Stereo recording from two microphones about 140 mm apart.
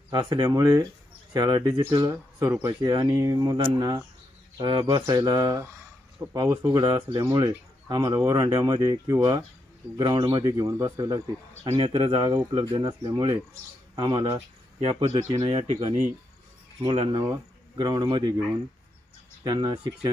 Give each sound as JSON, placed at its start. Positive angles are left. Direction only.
{"t": 0.1, "sound": "speech", "side_deg": -30}
{"t": 11.7, "sound": "speech", "side_deg": -40}
{"t": 12.3, "sound": "speech", "side_deg": -25}
{"t": 15.4, "sound": "speech", "side_deg": -50}
{"t": 16.8, "sound": "speech", "side_deg": -40}
{"t": 19.4, "sound": "speech", "side_deg": -30}